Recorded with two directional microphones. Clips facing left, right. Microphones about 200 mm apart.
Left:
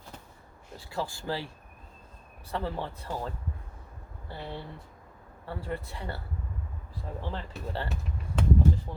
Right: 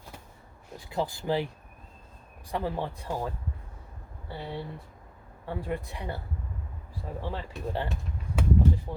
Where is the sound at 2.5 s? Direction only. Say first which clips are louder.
Right 2 dB; 15° right (ahead or behind).